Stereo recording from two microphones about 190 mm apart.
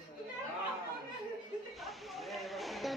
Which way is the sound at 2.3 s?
Centre (ahead or behind).